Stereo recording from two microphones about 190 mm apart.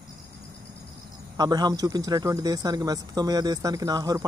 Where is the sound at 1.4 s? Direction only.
20° right (ahead or behind).